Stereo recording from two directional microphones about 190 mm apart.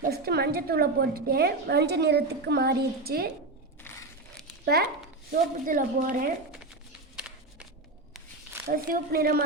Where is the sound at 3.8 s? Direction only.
10° left (ahead or behind).